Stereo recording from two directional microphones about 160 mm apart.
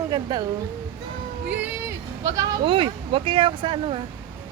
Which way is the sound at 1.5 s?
15° right (ahead or behind).